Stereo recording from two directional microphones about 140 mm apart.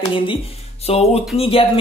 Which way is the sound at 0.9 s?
50° left (ahead or behind).